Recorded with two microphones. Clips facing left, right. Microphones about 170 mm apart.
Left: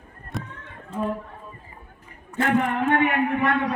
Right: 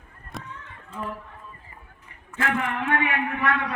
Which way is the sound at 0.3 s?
Centre (ahead or behind).